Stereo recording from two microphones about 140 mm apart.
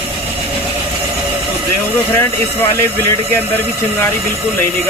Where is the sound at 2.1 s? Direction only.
15° left (ahead or behind).